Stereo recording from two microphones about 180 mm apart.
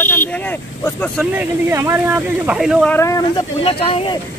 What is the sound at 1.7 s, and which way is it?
Speech, 15° right (ahead or behind).